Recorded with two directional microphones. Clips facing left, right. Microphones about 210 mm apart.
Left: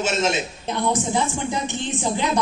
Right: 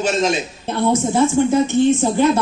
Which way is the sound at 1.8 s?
15° left (ahead or behind).